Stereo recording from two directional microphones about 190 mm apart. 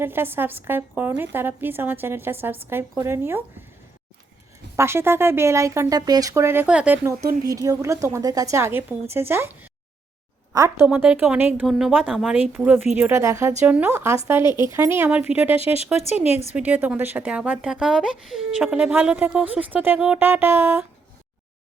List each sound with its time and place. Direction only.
0.0 s speech: 10° right (ahead or behind)
4.8 s speech: 15° right (ahead or behind)
10.5 s speech: 15° right (ahead or behind)
13.0 s speech: 15° right (ahead or behind)
16.2 s a woman's voice: 35° left (ahead or behind)
16.5 s speech: 10° right (ahead or behind)